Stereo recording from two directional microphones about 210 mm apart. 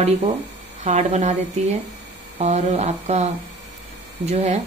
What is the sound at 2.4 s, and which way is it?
Speech, 30° right (ahead or behind).